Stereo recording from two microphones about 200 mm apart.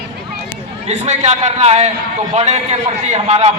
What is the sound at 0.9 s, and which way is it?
A man's voice, 35° right (ahead or behind).